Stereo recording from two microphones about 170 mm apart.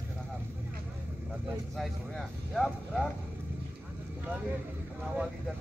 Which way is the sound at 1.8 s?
Centre (ahead or behind).